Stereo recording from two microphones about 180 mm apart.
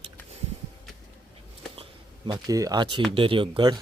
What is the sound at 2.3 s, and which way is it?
Speech, 20° right (ahead or behind).